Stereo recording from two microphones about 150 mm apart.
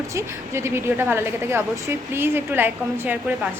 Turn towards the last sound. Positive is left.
turn(degrees=-15)  # may be behind; listen again after turning